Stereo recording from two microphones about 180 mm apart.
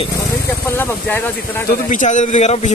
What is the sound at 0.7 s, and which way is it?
Speech, 10° left (ahead or behind).